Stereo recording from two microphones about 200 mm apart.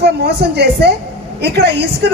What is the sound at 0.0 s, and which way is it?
A woman's voice, 55° right (ahead or behind).